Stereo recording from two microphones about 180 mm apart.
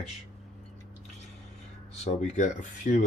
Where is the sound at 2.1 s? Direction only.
40° left (ahead or behind).